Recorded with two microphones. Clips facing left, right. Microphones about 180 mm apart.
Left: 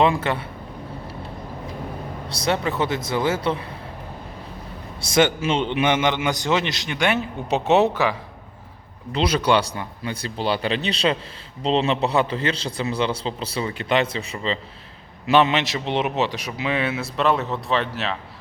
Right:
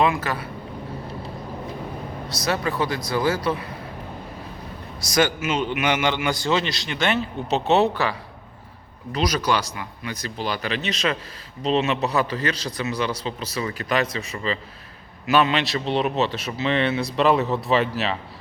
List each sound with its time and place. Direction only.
0.0 s a man's voice: 25° left (ahead or behind)
2.3 s a man's voice: 25° left (ahead or behind)
4.9 s a man's voice: 25° left (ahead or behind)
9.1 s a man's voice: 30° left (ahead or behind); by 18.2 s centre (ahead or behind)